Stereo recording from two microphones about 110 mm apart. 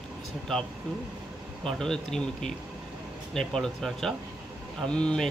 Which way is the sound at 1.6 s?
5° left (ahead or behind).